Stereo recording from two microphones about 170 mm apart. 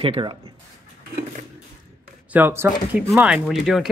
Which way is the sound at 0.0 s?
30° right (ahead or behind).